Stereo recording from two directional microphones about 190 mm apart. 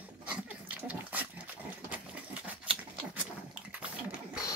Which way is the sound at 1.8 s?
5° right (ahead or behind).